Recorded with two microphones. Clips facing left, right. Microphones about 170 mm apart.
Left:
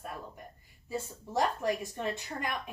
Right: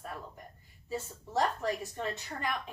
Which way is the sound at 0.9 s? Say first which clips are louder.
Left 1 dB; 15° left (ahead or behind).